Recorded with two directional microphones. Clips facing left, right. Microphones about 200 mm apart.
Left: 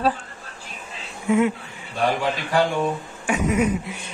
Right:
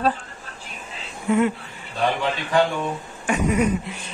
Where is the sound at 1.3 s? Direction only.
5° left (ahead or behind).